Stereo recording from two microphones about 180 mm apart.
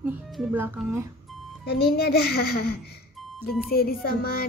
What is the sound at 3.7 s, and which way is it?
Speech, 55° left (ahead or behind).